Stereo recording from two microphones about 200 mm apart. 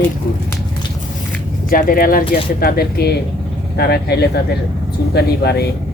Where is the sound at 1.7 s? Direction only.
45° left (ahead or behind).